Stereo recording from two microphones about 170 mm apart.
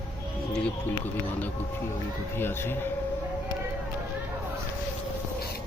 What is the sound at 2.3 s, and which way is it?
Speech, 15° left (ahead or behind).